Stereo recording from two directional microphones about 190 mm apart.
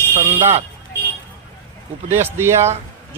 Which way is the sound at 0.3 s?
35° right (ahead or behind).